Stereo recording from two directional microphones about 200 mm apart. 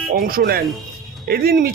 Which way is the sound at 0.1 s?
45° right (ahead or behind).